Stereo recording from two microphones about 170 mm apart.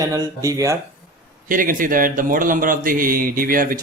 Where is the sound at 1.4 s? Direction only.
50° right (ahead or behind).